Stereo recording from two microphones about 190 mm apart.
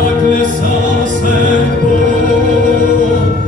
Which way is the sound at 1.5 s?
40° right (ahead or behind).